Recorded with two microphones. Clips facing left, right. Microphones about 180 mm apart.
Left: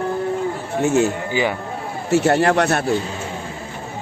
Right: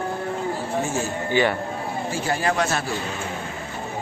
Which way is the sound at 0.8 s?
65° left (ahead or behind).